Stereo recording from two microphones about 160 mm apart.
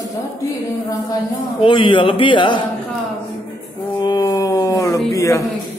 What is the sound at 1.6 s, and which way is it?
A man's voice, 30° left (ahead or behind).